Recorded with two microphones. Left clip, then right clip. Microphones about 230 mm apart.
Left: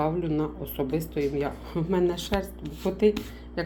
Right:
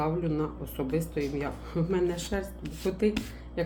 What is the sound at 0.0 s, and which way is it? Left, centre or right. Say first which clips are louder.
Speech: left 3 dB; left.